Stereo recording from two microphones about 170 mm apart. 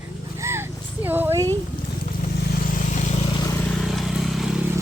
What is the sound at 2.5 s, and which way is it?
Vehicle, 55° left (ahead or behind).